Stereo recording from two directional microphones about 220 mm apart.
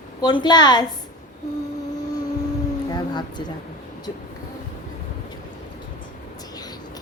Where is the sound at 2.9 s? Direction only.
20° left (ahead or behind).